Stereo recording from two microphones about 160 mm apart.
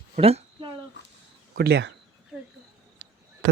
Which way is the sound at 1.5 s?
90° right.